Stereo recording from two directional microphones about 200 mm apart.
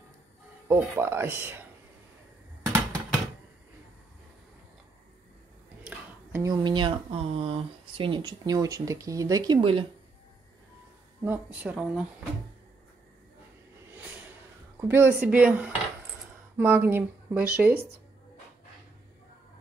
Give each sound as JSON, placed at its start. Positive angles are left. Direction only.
{"t": 0.7, "sound": "speech", "side_deg": -10}
{"t": 2.6, "sound": "a sound", "side_deg": -15}
{"t": 5.9, "sound": "a sound", "side_deg": -10}
{"t": 6.5, "sound": "speech", "side_deg": -25}
{"t": 11.2, "sound": "speech", "side_deg": -10}
{"t": 14.8, "sound": "speech", "side_deg": -10}